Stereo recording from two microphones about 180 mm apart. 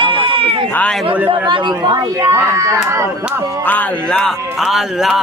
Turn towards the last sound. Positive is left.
turn(degrees=0)  # may be behind; listen again after turning